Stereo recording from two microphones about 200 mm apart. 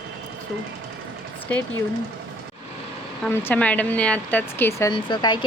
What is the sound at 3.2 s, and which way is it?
Speech, 10° left (ahead or behind).